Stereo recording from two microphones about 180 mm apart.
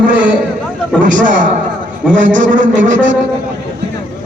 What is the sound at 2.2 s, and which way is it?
Speech, 45° right (ahead or behind).